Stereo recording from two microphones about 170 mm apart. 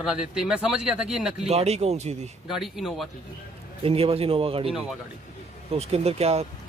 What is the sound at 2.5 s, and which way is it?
Speech, centre (ahead or behind).